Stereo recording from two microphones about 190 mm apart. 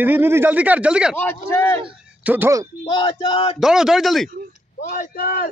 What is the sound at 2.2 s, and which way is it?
Speech, 10° right (ahead or behind).